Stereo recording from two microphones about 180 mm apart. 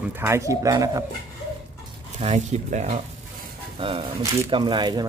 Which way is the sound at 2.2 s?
40° right (ahead or behind).